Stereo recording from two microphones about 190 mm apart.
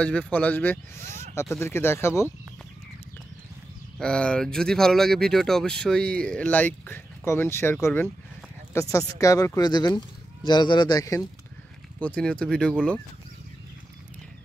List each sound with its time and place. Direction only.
0.0 s speech: 5° left (ahead or behind)
4.0 s speech: 5° left (ahead or behind)
12.0 s speech: 5° left (ahead or behind)